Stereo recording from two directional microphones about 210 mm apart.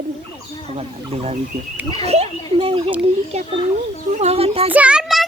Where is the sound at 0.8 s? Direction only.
30° right (ahead or behind).